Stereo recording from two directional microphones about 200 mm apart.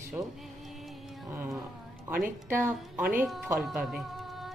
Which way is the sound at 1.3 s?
10° right (ahead or behind).